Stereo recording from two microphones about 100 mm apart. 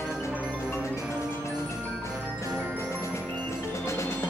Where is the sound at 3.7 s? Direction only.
30° left (ahead or behind).